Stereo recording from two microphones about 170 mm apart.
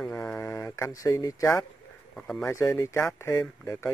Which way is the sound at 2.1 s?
5° left (ahead or behind).